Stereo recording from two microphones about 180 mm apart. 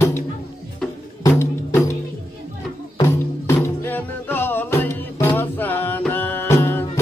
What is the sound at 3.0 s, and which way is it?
Music, 15° left (ahead or behind).